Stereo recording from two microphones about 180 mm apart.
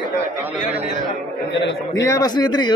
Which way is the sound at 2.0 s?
20° left (ahead or behind).